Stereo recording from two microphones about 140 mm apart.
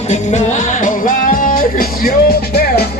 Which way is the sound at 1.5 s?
90° left.